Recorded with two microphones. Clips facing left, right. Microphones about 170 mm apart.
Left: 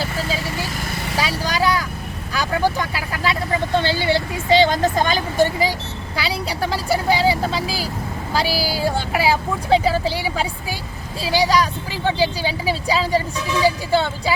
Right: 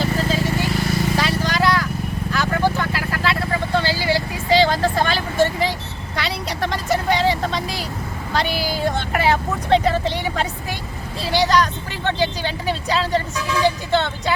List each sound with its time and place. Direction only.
1.1 s vehicle: 10° left (ahead or behind)
6.1 s speech: 10° left (ahead or behind)